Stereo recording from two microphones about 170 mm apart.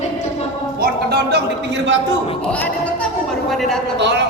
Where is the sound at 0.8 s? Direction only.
75° right (ahead or behind).